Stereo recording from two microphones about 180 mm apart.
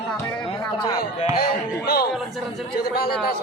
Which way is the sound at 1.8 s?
60° left (ahead or behind).